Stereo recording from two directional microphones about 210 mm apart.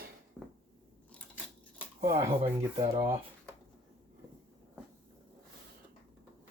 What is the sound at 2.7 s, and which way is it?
Speech, 30° right (ahead or behind).